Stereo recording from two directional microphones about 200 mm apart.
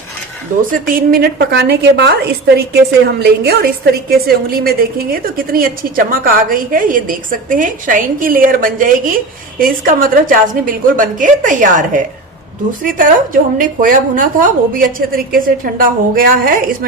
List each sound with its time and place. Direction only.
0.7 s a woman's voice: 45° right (ahead or behind)